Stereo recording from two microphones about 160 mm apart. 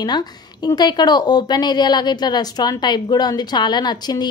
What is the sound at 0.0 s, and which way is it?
A woman's voice, 25° left (ahead or behind).